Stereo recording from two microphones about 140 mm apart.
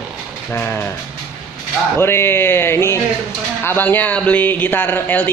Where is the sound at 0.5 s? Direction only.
15° left (ahead or behind).